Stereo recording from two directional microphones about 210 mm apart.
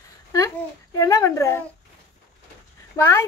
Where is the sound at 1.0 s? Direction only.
15° left (ahead or behind).